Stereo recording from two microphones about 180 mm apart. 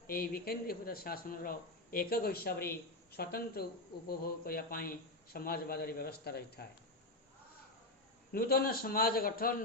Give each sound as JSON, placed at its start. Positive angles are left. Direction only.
{"t": 0.1, "sound": "speech", "side_deg": 55}
{"t": 8.3, "sound": "speech", "side_deg": 60}